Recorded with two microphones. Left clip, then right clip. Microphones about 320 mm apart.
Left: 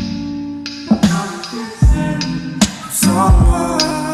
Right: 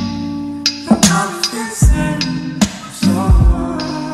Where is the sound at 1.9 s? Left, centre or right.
Centre.